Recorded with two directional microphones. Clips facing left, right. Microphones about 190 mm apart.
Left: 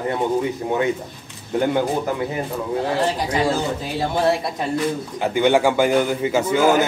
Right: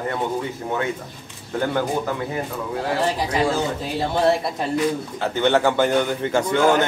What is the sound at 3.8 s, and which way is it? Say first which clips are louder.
Speech: right 1 dB; centre (ahead or behind).